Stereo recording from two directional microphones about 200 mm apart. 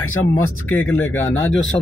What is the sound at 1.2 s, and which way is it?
Speech, 80° left.